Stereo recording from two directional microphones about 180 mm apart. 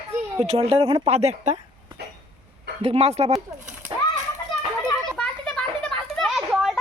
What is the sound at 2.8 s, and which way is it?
Speech, 35° right (ahead or behind).